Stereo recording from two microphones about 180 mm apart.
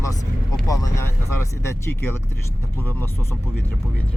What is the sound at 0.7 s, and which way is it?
Speech, 15° left (ahead or behind).